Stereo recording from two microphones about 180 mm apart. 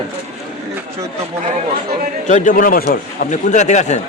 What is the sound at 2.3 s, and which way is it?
Speech, 45° left (ahead or behind).